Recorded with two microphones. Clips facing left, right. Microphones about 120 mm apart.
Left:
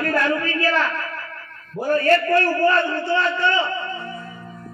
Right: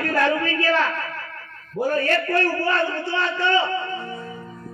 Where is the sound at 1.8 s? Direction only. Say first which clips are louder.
Left 4 dB; 40° left (ahead or behind).